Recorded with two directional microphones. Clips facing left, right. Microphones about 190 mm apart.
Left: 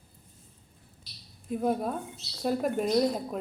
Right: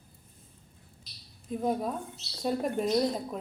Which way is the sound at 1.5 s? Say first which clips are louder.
Left 2 dB; 5° left (ahead or behind).